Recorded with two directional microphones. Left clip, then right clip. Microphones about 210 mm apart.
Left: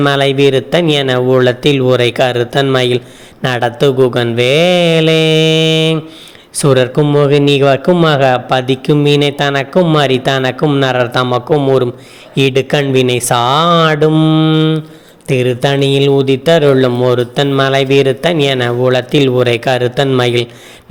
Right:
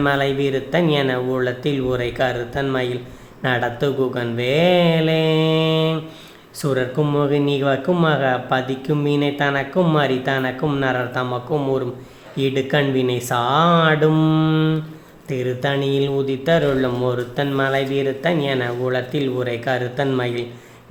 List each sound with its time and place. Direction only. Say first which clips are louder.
0.0 s a man's voice: left 9 dB; 35° left (ahead or behind)
15.3 s a man's voice: left 9 dB; 35° left (ahead or behind)